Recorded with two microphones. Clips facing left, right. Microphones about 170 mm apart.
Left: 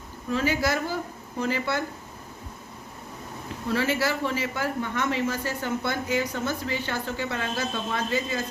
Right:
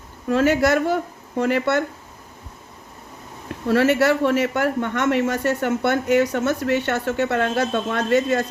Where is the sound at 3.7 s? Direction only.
70° right (ahead or behind).